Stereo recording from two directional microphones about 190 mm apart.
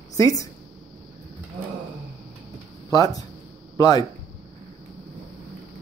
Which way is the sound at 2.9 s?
20° left (ahead or behind).